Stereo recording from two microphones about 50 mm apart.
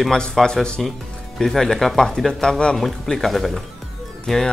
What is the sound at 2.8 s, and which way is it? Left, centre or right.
Speech, centre.